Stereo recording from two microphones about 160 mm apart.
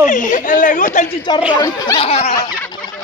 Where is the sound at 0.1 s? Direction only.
55° left (ahead or behind).